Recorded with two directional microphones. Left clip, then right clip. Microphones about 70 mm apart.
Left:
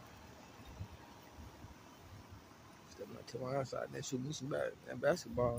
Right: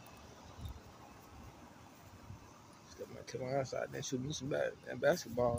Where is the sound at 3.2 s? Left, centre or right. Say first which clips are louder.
Right 2 dB; centre.